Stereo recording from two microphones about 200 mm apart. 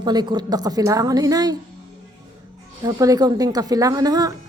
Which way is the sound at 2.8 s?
15° right (ahead or behind).